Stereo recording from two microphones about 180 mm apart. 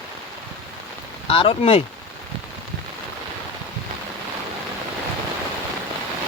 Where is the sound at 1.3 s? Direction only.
30° left (ahead or behind).